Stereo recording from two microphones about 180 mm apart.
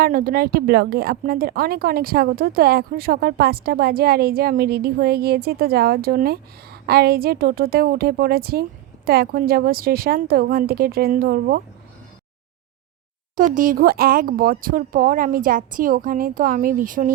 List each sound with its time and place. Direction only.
0.0 s a woman's voice: 55° right (ahead or behind)
13.3 s speech: 45° right (ahead or behind)